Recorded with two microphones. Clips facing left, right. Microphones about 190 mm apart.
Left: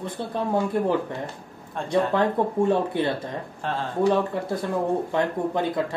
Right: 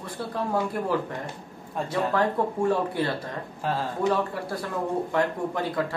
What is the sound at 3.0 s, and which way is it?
Speech, 20° left (ahead or behind).